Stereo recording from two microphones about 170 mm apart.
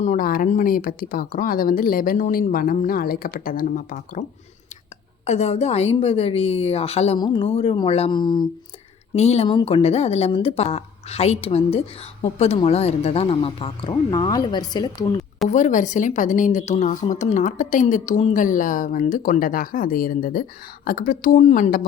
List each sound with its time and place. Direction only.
0.0 s speech: 50° left (ahead or behind)
5.2 s a woman's voice: 40° left (ahead or behind)
9.1 s a woman's voice: 40° left (ahead or behind)
15.4 s speech: 45° left (ahead or behind)